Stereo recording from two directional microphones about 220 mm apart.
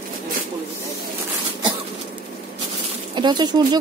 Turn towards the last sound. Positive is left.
turn(degrees=-20)  # may be behind; listen again after turning